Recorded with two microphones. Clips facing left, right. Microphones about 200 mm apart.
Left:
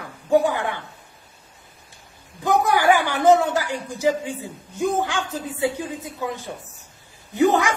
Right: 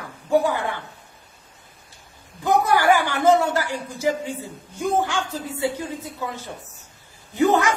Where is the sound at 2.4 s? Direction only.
15° left (ahead or behind).